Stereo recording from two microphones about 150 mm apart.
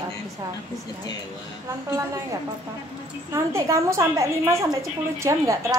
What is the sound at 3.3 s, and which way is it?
A woman's voice, 20° right (ahead or behind).